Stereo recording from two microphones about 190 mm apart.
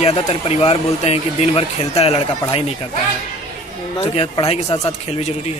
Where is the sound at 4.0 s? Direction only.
30° left (ahead or behind).